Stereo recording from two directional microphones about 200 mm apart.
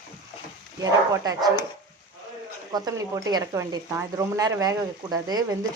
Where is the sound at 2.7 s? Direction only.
15° right (ahead or behind).